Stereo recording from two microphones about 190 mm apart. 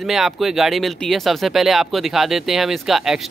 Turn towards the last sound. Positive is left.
turn(degrees=0)  # may be behind; listen again after turning